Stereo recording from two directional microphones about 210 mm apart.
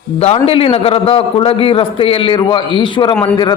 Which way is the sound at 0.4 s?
30° left (ahead or behind).